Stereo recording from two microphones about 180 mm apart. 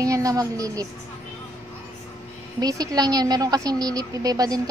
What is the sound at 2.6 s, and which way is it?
A woman's voice, 20° right (ahead or behind).